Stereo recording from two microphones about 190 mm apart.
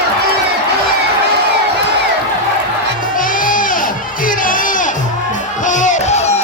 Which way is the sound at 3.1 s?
45° left (ahead or behind).